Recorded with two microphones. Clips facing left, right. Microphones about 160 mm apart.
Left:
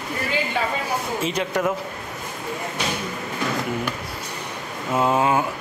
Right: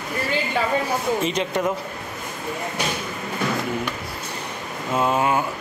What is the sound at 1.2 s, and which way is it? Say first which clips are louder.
Speech: right 1 dB; 5° left (ahead or behind).